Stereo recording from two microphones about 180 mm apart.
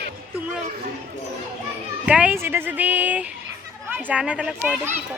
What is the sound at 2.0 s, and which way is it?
Speech, 5° right (ahead or behind).